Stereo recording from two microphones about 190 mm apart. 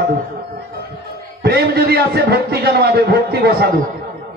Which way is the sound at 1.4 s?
55° right (ahead or behind).